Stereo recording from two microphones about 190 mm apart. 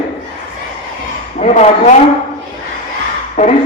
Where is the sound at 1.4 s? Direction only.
35° left (ahead or behind).